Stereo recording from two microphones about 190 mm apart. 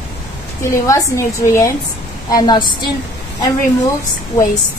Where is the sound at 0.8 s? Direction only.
15° left (ahead or behind).